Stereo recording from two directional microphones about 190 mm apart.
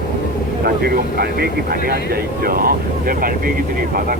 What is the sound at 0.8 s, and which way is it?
Speech, 55° right (ahead or behind).